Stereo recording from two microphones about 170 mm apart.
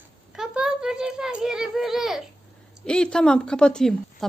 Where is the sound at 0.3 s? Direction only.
5° right (ahead or behind).